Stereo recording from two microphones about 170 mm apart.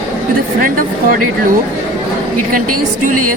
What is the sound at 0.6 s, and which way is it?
Speech, 55° right (ahead or behind).